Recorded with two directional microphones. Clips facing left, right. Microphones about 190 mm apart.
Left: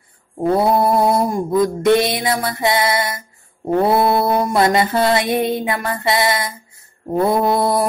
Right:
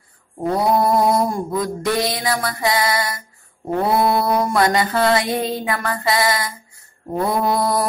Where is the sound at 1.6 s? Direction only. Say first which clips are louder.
Left 8 dB; 25° left (ahead or behind).